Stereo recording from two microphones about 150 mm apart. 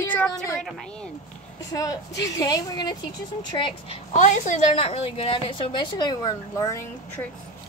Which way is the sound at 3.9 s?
50° left (ahead or behind).